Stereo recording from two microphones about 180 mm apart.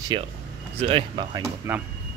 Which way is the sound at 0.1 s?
25° right (ahead or behind).